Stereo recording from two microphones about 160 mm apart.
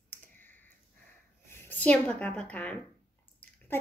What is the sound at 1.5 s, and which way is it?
A woman's voice, 15° left (ahead or behind).